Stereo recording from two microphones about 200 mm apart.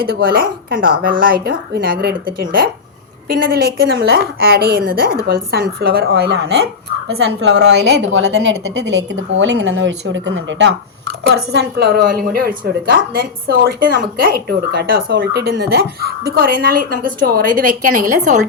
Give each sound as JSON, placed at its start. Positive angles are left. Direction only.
{"t": 0.0, "sound": "a woman's voice", "side_deg": -50}